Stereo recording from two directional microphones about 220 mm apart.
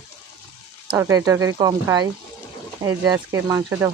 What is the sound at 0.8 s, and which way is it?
Speech, 15° right (ahead or behind).